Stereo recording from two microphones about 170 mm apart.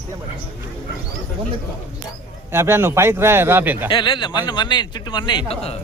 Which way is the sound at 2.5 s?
15° right (ahead or behind).